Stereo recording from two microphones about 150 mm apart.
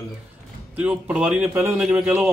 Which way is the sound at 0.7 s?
10° right (ahead or behind).